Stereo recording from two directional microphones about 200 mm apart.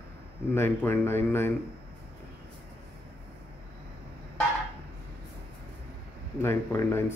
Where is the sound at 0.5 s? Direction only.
10° left (ahead or behind).